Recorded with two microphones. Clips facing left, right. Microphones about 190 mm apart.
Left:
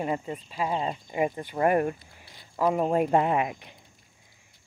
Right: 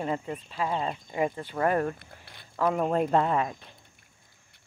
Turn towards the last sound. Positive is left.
turn(degrees=15)  # may be behind; listen again after turning